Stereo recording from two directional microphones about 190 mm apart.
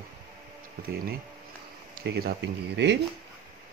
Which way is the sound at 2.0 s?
55° right (ahead or behind).